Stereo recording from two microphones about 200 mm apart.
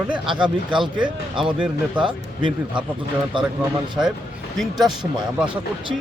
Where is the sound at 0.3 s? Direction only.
25° right (ahead or behind).